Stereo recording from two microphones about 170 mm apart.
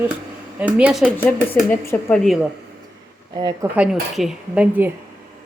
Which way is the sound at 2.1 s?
Centre (ahead or behind).